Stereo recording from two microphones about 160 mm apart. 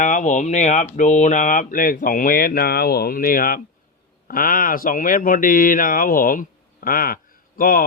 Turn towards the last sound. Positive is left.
turn(degrees=65)  # may be behind; listen again after turning